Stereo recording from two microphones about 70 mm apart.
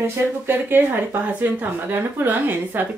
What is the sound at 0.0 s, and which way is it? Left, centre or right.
Speech, right.